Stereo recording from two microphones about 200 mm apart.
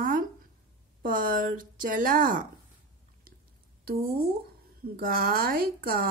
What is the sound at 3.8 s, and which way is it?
A woman's voice, 50° right (ahead or behind).